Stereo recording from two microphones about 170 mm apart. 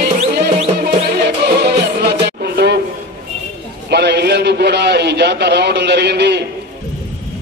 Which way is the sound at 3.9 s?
80° right.